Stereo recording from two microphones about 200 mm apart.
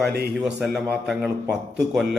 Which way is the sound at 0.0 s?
55° right (ahead or behind).